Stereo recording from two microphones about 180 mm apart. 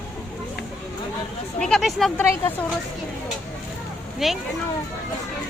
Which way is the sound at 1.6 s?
Centre (ahead or behind).